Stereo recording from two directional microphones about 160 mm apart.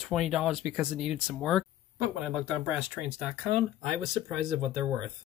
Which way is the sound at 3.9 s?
5° right (ahead or behind).